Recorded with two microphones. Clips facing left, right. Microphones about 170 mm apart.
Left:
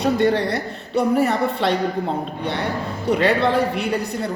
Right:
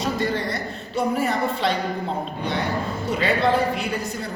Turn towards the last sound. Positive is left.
turn(degrees=65)  # may be behind; listen again after turning